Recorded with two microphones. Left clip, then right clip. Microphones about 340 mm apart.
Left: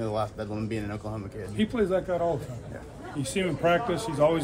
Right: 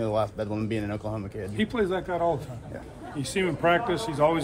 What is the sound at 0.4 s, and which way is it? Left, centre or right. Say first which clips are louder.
Speech: right 3 dB; right.